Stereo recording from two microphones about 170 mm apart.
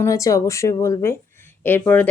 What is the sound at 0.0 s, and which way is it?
Speech, 20° left (ahead or behind).